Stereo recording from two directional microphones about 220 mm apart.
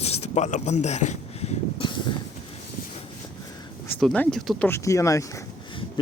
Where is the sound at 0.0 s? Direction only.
30° left (ahead or behind).